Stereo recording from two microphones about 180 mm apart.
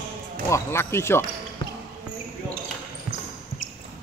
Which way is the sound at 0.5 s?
15° left (ahead or behind).